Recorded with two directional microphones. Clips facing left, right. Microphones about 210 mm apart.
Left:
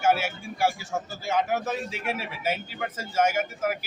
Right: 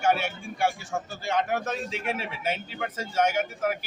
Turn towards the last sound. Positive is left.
turn(degrees=5)  # may be behind; listen again after turning